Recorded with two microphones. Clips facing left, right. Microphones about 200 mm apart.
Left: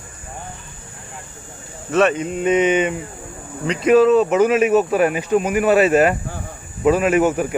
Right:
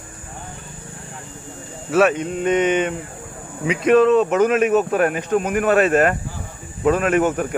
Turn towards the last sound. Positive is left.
turn(degrees=5)  # may be behind; listen again after turning